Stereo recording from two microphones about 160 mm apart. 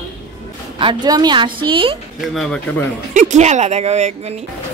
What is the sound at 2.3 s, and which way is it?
Speech, 5° left (ahead or behind).